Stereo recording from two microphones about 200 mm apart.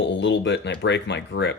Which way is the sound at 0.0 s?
60° left (ahead or behind).